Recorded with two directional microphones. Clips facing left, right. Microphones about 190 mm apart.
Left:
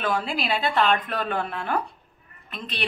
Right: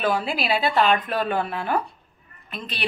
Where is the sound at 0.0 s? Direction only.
5° right (ahead or behind).